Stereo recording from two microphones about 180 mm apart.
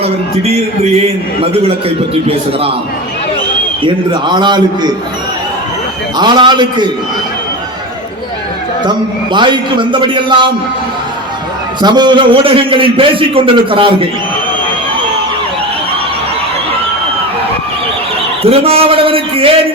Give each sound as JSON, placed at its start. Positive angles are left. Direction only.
{"t": 0.0, "sound": "a man's voice", "side_deg": -35}
{"t": 3.8, "sound": "a man's voice", "side_deg": -25}
{"t": 6.1, "sound": "a man's voice", "side_deg": -25}
{"t": 8.8, "sound": "a man's voice", "side_deg": -25}
{"t": 11.8, "sound": "a man's voice", "side_deg": -25}
{"t": 18.4, "sound": "a man's voice", "side_deg": -35}